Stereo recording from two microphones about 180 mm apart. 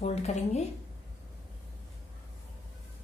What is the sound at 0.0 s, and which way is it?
Speech, 35° left (ahead or behind).